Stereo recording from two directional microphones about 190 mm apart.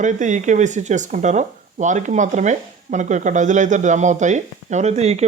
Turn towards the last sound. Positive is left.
turn(degrees=-35)  # may be behind; listen again after turning